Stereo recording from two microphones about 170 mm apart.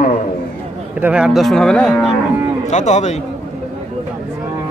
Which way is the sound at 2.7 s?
45° left (ahead or behind).